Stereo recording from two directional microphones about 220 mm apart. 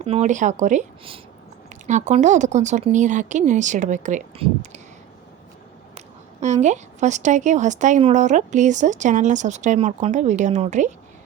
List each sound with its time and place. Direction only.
0.0 s a woman's voice: 30° right (ahead or behind)
6.4 s a woman's voice: 30° right (ahead or behind)